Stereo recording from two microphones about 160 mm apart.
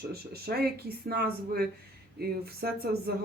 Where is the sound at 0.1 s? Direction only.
75° right (ahead or behind).